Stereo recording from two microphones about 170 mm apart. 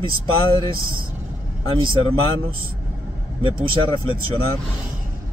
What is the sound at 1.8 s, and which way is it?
Speech, 30° right (ahead or behind).